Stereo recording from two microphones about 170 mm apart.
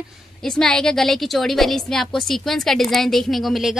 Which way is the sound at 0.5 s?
5° left (ahead or behind).